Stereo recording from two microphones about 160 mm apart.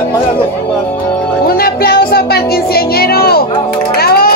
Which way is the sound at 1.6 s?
75° left (ahead or behind).